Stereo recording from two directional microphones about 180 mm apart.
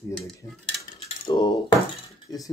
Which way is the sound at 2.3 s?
20° left (ahead or behind).